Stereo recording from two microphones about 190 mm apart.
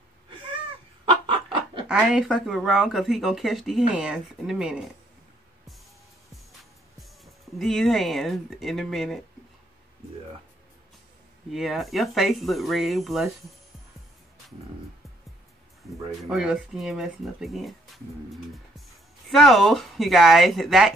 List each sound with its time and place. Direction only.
1.0 s chicken: 25° right (ahead or behind)
1.9 s speech: 5° right (ahead or behind)
7.5 s speech: centre (ahead or behind)
11.5 s speech: centre (ahead or behind)
16.2 s speech: 5° right (ahead or behind)
19.2 s speech: centre (ahead or behind)